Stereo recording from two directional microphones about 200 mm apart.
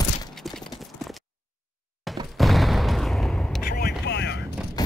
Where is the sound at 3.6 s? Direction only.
45° left (ahead or behind).